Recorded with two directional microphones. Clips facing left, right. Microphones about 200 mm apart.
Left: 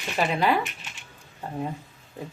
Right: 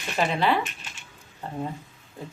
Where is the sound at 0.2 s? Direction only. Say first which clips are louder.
Even; 10° left (ahead or behind).